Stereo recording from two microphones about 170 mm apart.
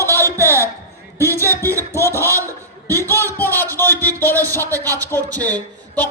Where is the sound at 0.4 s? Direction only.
15° left (ahead or behind).